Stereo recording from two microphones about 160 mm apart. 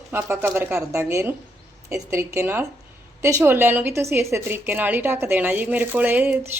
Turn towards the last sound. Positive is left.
turn(degrees=-10)  # may be behind; listen again after turning